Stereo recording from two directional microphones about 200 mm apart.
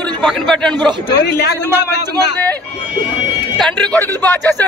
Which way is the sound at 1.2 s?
55° left (ahead or behind).